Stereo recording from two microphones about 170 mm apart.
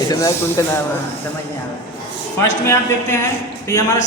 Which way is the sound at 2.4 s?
15° left (ahead or behind).